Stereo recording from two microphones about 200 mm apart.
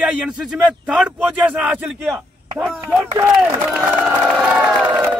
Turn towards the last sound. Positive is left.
turn(degrees=-5)  # may be behind; listen again after turning